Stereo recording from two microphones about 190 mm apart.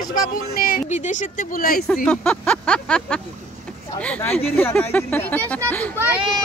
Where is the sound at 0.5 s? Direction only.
50° left (ahead or behind).